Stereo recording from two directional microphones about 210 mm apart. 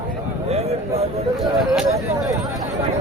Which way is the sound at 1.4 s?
Centre (ahead or behind).